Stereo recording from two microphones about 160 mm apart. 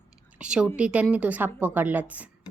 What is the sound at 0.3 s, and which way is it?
A woman's voice, 5° right (ahead or behind).